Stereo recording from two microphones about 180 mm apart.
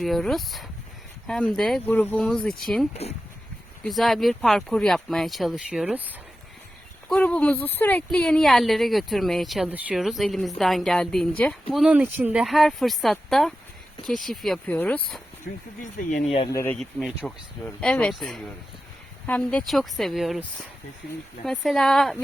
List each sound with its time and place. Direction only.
0.0 s a woman's voice: centre (ahead or behind)
3.0 s speech: 35° left (ahead or behind)
3.8 s a woman's voice: centre (ahead or behind)
7.1 s a woman's voice: 5° left (ahead or behind)
15.5 s speech: 70° left (ahead or behind)
15.8 s speech: 45° left (ahead or behind)
16.5 s speech: 15° left (ahead or behind)
16.7 s a woman's voice: centre (ahead or behind)